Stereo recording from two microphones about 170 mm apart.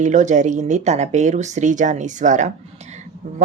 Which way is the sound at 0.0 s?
45° right (ahead or behind).